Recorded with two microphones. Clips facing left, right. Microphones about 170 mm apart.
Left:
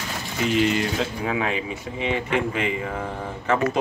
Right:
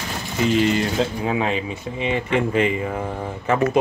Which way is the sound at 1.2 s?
25° right (ahead or behind).